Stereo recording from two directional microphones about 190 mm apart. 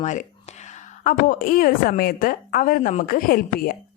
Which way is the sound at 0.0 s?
40° left (ahead or behind).